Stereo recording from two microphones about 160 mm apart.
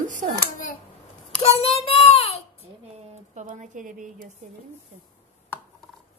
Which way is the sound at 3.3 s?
50° right (ahead or behind).